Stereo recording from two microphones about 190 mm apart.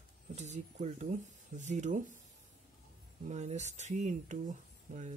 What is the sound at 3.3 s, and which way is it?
Speech, 35° right (ahead or behind).